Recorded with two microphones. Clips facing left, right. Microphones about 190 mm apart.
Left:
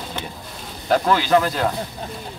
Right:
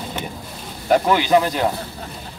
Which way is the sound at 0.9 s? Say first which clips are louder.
Right 2 dB; 15° right (ahead or behind).